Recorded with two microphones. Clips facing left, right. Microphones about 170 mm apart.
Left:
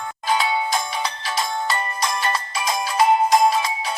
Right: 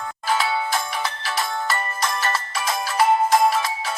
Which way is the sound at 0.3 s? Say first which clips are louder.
Left 1 dB; 20° left (ahead or behind).